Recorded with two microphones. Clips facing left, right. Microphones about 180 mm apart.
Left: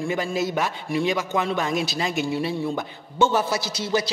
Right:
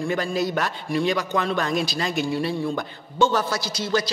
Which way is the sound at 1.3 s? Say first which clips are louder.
Even; 15° left (ahead or behind).